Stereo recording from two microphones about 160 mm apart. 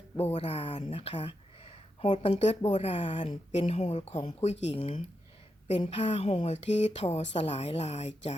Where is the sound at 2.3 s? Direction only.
45° left (ahead or behind).